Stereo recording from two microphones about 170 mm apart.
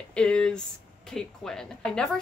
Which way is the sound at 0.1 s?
5° left (ahead or behind).